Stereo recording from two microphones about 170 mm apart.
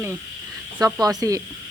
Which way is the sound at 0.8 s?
20° right (ahead or behind).